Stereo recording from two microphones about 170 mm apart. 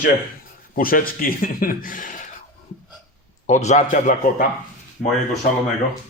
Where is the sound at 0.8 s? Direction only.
60° left (ahead or behind).